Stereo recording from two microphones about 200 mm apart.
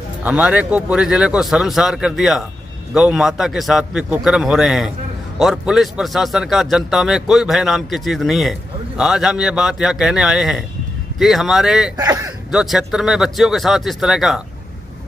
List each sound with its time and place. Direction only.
0.2 s a man's voice: 5° right (ahead or behind)
12.0 s speech: 15° right (ahead or behind)
12.4 s a man's voice: centre (ahead or behind)